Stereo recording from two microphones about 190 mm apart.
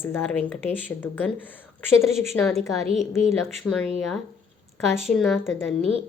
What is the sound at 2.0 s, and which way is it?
Speech, centre (ahead or behind).